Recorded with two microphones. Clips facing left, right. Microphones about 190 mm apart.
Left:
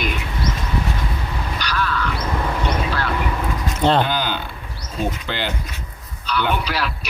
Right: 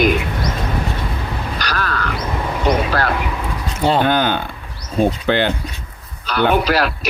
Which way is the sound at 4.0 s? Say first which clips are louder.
Right 6 dB; 55° right (ahead or behind).